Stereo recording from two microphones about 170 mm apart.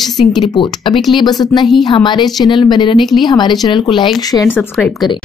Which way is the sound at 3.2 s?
25° left (ahead or behind).